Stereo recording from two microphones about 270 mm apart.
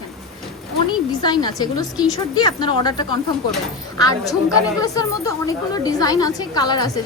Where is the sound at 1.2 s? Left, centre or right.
Centre.